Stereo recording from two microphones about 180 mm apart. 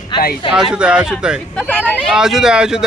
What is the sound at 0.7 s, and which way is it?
Speech, 5° right (ahead or behind).